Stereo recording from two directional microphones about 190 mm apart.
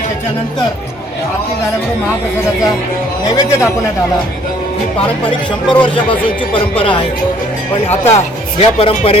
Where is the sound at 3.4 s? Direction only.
15° left (ahead or behind).